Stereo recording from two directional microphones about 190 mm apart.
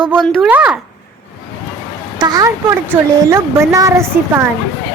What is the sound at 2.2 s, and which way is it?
A woman's voice, 20° right (ahead or behind).